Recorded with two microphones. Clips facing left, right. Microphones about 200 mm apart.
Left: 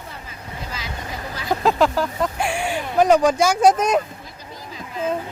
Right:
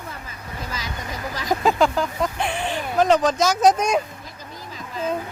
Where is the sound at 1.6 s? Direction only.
Centre (ahead or behind).